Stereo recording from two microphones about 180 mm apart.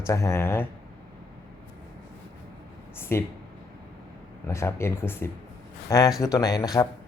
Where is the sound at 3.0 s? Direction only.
15° left (ahead or behind).